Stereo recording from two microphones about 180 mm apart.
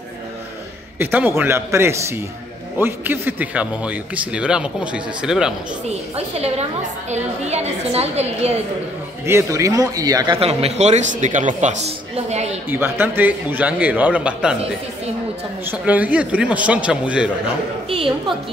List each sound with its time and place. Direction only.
0.9 s a man's voice: 10° right (ahead or behind)
5.9 s speech: 35° right (ahead or behind)
9.2 s speech: 15° right (ahead or behind); by 12.5 s 35° right (ahead or behind)
12.6 s a man's voice: 10° right (ahead or behind)
15.6 s a man's voice: 10° right (ahead or behind)
17.8 s a woman's voice: 30° right (ahead or behind)